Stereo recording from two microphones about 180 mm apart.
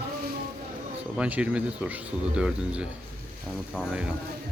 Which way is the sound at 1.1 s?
5° right (ahead or behind).